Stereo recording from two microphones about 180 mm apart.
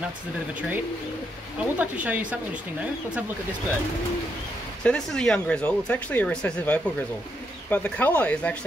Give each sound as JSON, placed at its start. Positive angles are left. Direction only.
{"t": 1.6, "sound": "a woman's voice", "side_deg": -10}
{"t": 4.8, "sound": "speech", "side_deg": 5}